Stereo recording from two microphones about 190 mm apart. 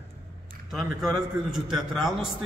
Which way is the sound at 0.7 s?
Centre (ahead or behind).